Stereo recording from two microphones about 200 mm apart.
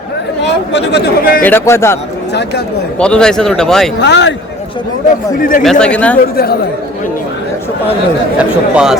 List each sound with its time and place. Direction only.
0.4 s a man's voice: 60° left (ahead or behind)
1.4 s speech: 10° left (ahead or behind)
3.0 s speech: 5° left (ahead or behind)
4.0 s a man's voice: 60° left (ahead or behind)
5.4 s speech: 45° left (ahead or behind)
5.8 s speech: 5° left (ahead or behind)
6.3 s speech: 50° left (ahead or behind)
8.4 s speech: 5° right (ahead or behind)